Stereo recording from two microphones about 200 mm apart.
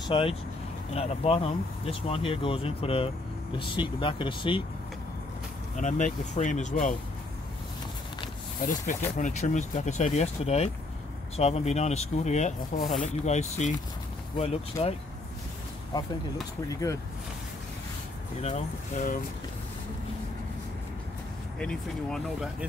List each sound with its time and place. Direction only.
0.0 s speech: 25° left (ahead or behind)
5.8 s speech: 35° left (ahead or behind)
8.5 s speech: 40° left (ahead or behind)
16.6 s speech: 15° left (ahead or behind)
18.4 s speech: 35° left (ahead or behind)
21.5 s speech: 5° left (ahead or behind)